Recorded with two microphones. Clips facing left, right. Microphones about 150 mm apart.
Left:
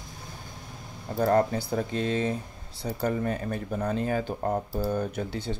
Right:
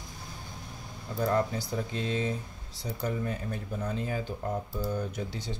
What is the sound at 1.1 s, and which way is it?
Speech, 60° left (ahead or behind).